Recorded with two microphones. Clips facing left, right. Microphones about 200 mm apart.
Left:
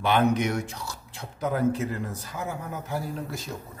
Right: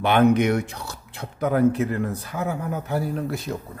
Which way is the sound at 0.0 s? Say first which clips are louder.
Right 5 dB; 60° right (ahead or behind).